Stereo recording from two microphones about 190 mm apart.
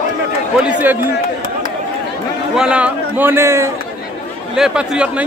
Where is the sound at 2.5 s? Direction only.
5° right (ahead or behind).